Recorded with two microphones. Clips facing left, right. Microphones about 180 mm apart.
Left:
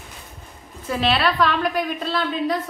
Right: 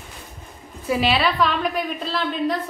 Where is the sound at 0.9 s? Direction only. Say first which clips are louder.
Right 1 dB; 5° right (ahead or behind).